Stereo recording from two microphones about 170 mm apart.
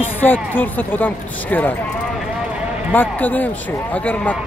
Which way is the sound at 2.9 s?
10° left (ahead or behind).